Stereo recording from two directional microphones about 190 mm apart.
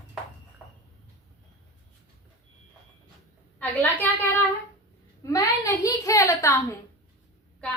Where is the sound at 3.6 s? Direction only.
10° left (ahead or behind).